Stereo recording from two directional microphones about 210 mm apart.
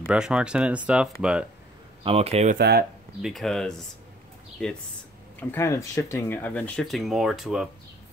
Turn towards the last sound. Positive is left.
turn(degrees=0)  # may be behind; listen again after turning